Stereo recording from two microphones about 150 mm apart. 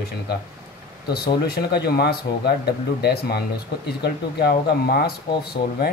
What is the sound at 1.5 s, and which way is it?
Speech, 90° left.